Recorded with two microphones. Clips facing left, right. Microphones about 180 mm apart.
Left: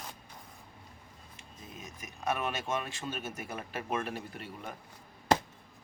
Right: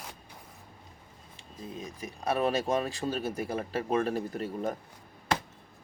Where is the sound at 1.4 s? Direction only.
30° right (ahead or behind).